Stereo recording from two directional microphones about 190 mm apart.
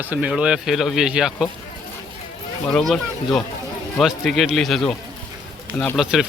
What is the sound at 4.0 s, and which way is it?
Speech, centre (ahead or behind).